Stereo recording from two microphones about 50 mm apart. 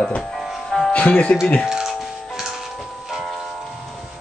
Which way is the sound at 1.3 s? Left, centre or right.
Left.